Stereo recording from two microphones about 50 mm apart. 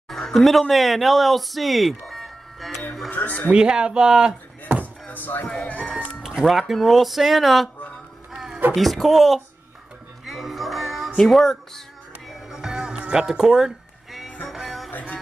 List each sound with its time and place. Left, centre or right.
0.1 s speech: centre
3.1 s speech: left
3.5 s speech: centre
5.0 s speech: left
5.7 s speech: left
6.7 s a sound: centre
8.7 s a sound: centre
10.2 s music: centre
11.2 s a sound: centre
12.3 s music: centre
14.9 s music: left